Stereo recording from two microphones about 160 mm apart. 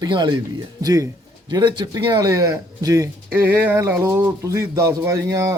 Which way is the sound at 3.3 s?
10° right (ahead or behind).